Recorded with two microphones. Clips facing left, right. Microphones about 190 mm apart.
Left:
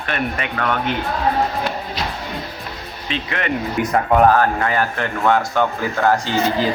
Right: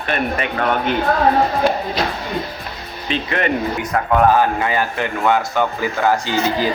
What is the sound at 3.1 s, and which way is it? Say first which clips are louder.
Speech: right 4 dB; 45° right (ahead or behind).